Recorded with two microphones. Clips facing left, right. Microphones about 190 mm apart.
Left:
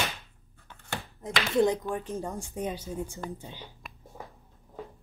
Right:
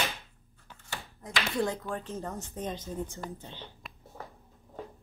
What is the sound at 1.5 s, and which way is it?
Speech, 20° left (ahead or behind).